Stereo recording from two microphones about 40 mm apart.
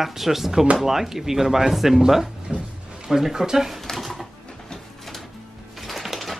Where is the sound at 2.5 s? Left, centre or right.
Centre.